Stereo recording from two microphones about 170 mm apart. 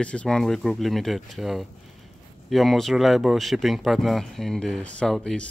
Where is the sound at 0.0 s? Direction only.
5° left (ahead or behind).